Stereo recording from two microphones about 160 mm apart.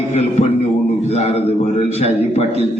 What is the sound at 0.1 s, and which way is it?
A man's voice, 45° left (ahead or behind).